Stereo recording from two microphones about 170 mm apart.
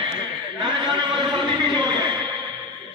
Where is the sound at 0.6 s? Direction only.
30° right (ahead or behind).